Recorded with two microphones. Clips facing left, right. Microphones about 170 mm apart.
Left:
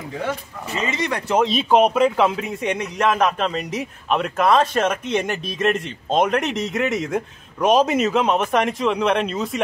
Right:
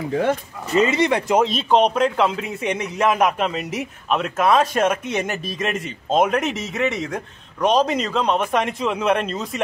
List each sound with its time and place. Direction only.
0.9 s speech: 30° right (ahead or behind)
1.4 s a man's voice: 5° left (ahead or behind)